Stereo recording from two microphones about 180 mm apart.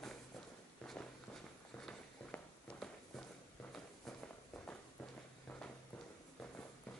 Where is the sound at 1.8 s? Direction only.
5° left (ahead or behind).